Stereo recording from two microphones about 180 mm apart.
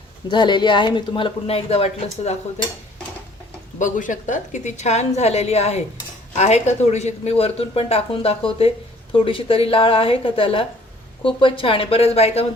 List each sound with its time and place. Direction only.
0.3 s speech: 25° left (ahead or behind)
3.8 s speech: 45° left (ahead or behind)